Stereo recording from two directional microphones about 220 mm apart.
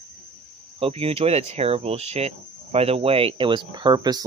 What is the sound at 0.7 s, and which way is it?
Speech, 25° right (ahead or behind).